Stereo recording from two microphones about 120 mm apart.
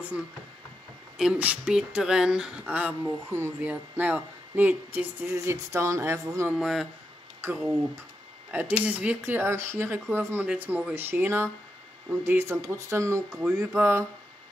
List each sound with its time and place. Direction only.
1.1 s speech: 10° right (ahead or behind); by 6.5 s 25° right (ahead or behind)
6.6 s speech: centre (ahead or behind)
7.4 s speech: 20° right (ahead or behind)
13.3 s speech: 5° right (ahead or behind)
13.6 s speech: 20° right (ahead or behind)